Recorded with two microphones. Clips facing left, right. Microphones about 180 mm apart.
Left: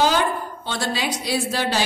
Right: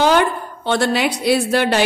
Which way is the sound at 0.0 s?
60° right (ahead or behind).